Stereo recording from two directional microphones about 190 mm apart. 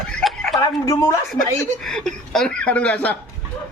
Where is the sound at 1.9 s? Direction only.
Centre (ahead or behind).